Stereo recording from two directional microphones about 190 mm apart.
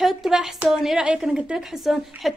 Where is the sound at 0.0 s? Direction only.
Centre (ahead or behind).